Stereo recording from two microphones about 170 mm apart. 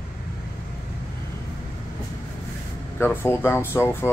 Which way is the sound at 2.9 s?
15° left (ahead or behind).